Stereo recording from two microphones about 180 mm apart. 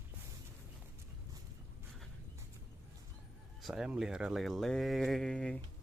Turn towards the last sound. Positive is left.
turn(degrees=5)  # may be behind; listen again after turning